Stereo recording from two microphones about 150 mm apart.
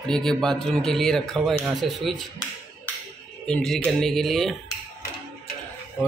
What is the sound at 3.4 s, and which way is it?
A man's voice, 5° left (ahead or behind).